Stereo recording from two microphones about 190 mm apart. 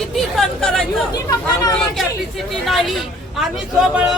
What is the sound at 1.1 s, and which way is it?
Speech, 20° left (ahead or behind).